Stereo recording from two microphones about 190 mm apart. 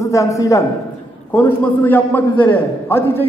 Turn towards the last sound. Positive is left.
turn(degrees=10)  # may be behind; listen again after turning